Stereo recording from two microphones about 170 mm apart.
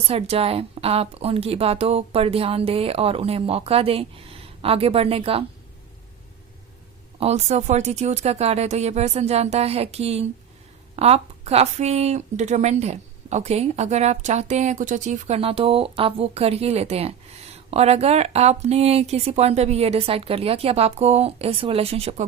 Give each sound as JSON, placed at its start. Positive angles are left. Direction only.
{"t": 0.1, "sound": "speech", "side_deg": -35}
{"t": 7.2, "sound": "speech", "side_deg": -40}